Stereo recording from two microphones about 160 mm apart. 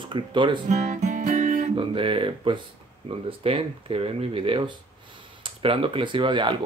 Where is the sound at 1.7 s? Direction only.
35° right (ahead or behind).